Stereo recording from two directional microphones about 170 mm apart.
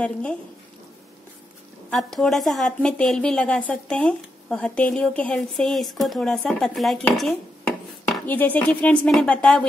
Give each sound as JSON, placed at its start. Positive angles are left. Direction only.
{"t": 0.0, "sound": "a woman's voice", "side_deg": 5}
{"t": 1.9, "sound": "a woman's voice", "side_deg": 0}